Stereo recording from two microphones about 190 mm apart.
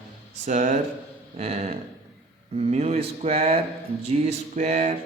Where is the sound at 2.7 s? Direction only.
35° right (ahead or behind).